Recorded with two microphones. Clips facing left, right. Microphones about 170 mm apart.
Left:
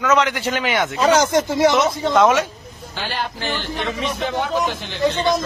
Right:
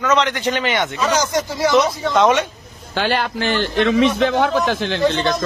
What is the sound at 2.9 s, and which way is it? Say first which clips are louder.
A man's voice: right 7 dB; 75° right (ahead or behind).